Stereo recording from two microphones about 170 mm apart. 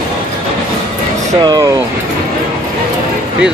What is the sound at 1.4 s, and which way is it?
Speech, 20° right (ahead or behind).